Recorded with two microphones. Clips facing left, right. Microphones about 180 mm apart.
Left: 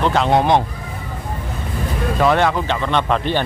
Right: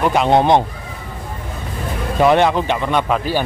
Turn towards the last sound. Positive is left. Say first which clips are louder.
# right 1 dB
turn(degrees=-5)  # may be behind; listen again after turning